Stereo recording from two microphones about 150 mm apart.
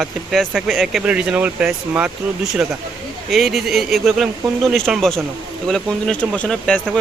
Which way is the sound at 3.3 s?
Centre (ahead or behind).